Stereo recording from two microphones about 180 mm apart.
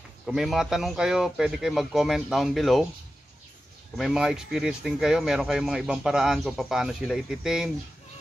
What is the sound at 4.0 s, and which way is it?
Speech, 5° right (ahead or behind).